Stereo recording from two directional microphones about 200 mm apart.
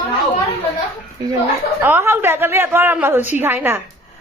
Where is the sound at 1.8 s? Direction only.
10° right (ahead or behind).